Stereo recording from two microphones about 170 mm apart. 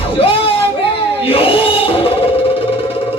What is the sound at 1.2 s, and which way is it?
Music, 35° left (ahead or behind).